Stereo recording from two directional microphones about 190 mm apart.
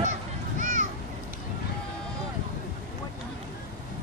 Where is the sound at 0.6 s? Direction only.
45° right (ahead or behind).